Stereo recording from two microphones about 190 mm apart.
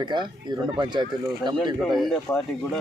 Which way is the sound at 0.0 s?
25° right (ahead or behind).